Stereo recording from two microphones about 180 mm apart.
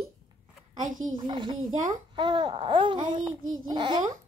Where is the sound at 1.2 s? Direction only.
25° right (ahead or behind).